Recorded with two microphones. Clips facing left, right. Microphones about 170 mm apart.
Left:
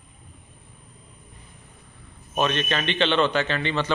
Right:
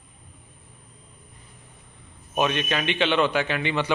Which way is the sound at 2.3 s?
10° right (ahead or behind).